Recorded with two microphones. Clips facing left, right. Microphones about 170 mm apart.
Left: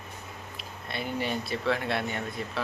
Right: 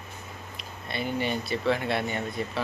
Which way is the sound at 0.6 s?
Centre (ahead or behind).